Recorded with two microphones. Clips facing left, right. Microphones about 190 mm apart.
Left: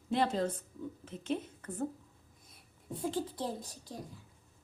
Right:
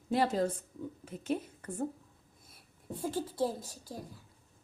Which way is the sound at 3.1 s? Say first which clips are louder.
Right 3 dB; 5° right (ahead or behind).